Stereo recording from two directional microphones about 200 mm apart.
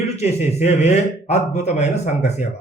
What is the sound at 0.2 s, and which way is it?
A man's voice, 35° left (ahead or behind).